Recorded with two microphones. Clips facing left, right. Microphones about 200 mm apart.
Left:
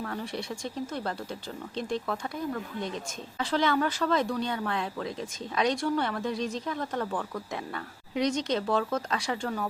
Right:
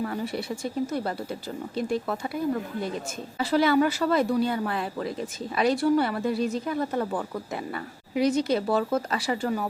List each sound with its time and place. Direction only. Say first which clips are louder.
0.0 s a woman's voice: right 5 dB; 10° right (ahead or behind)